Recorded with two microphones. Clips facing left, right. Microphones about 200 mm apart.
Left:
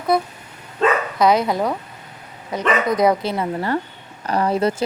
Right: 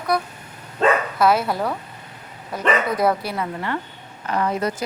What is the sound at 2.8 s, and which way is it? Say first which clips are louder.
Speech: left 3 dB; 15° left (ahead or behind).